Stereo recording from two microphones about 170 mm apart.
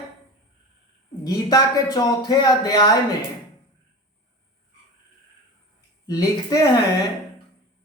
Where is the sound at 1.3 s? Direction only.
20° left (ahead or behind).